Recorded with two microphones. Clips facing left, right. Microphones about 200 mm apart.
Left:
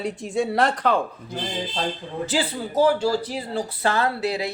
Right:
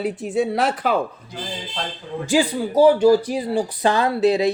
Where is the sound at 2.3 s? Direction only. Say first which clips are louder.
Right 8 dB; 15° right (ahead or behind).